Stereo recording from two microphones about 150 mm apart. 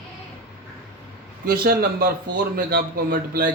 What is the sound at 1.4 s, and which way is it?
A man's voice, 80° right.